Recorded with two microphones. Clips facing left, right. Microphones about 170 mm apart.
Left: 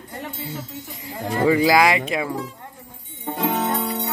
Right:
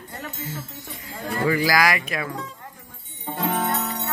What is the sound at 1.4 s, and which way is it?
Speech, 25° left (ahead or behind).